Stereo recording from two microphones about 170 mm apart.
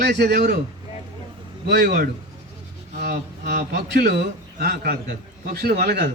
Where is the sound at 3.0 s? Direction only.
75° right (ahead or behind).